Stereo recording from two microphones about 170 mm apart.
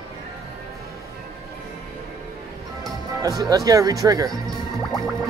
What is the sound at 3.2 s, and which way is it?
Speech, 20° right (ahead or behind).